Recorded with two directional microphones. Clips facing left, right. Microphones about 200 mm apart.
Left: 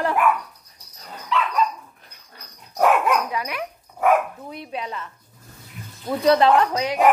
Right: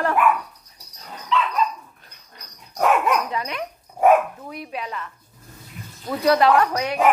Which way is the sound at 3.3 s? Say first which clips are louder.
Even; 5° left (ahead or behind).